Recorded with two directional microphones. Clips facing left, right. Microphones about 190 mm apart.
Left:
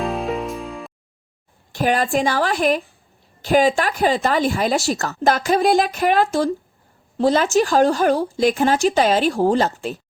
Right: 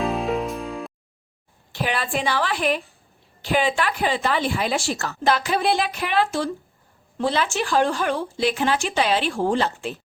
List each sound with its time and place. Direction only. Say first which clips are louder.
0.0 s music: even; centre (ahead or behind)
1.7 s speech: left 7 dB; 45° left (ahead or behind)